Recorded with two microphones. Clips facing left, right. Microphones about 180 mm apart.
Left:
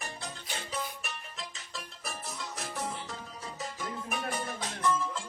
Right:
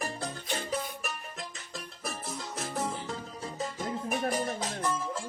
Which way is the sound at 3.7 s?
40° right (ahead or behind).